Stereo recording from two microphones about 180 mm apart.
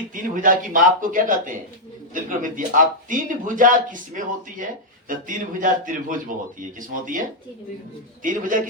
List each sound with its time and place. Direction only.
0.1 s speech: 45° right (ahead or behind)
8.2 s speech: 45° right (ahead or behind)